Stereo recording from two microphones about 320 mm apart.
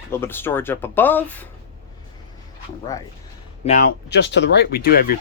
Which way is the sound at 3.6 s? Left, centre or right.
Left.